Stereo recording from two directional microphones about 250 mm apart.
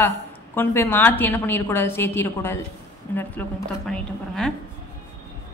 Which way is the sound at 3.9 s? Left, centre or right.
Centre.